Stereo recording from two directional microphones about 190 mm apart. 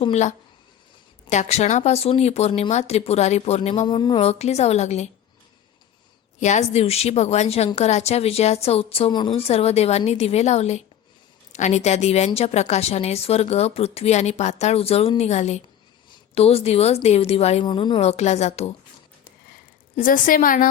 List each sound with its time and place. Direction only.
0.0 s a woman's voice: 35° left (ahead or behind)
3.8 s a woman's voice: 25° left (ahead or behind)
6.4 s a woman's voice: 40° left (ahead or behind)
20.0 s a woman's voice: 45° left (ahead or behind)